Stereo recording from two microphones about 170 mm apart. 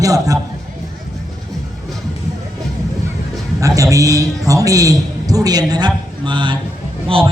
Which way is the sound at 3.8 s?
20° right (ahead or behind).